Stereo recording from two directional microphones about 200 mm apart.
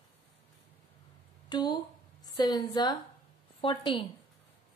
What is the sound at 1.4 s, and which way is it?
A woman's voice, 20° left (ahead or behind).